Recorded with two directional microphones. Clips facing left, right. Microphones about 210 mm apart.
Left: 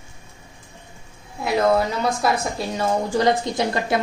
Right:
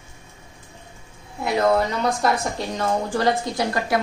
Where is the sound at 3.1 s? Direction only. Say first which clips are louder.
Left 3 dB; 20° left (ahead or behind).